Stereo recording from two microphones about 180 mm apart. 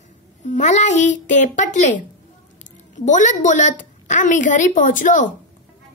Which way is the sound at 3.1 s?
45° left (ahead or behind).